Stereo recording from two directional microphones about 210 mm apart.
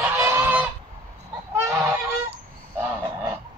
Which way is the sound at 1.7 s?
10° right (ahead or behind).